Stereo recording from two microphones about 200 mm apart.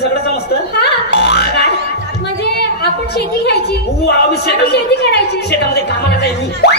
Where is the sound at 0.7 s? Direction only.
55° left (ahead or behind).